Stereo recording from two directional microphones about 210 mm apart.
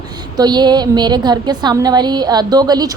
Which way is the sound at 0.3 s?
20° right (ahead or behind).